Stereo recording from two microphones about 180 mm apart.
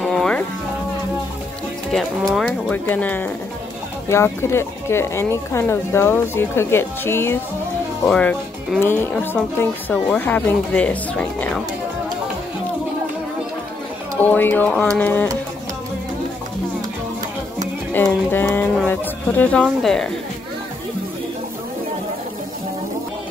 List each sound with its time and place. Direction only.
0.0 s music: 5° left (ahead or behind)
1.9 s speech: centre (ahead or behind)
14.2 s speech: 10° left (ahead or behind)
17.9 s speech: 10° left (ahead or behind)